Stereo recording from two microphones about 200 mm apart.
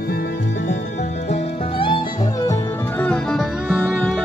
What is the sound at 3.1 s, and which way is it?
Music, 5° left (ahead or behind).